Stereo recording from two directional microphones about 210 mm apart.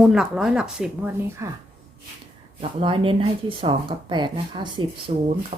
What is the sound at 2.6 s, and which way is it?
A woman's voice, 25° right (ahead or behind).